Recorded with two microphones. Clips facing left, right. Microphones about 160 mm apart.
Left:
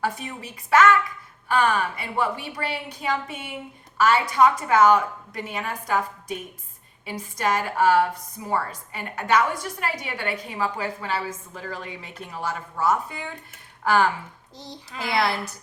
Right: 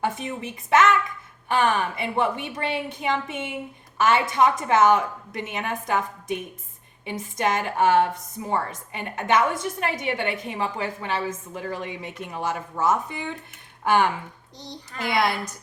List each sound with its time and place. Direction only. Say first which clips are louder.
0.0 s a woman's voice: right 2 dB; 20° right (ahead or behind)
15.1 s a woman's voice: even; 15° right (ahead or behind)